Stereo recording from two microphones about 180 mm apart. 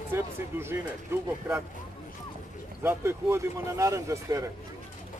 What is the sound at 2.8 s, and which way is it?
Speech, 15° right (ahead or behind).